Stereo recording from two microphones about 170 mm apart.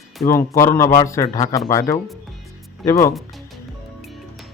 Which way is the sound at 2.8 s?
20° left (ahead or behind).